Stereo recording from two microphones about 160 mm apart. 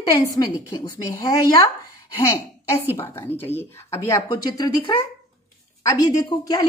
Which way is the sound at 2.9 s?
15° left (ahead or behind).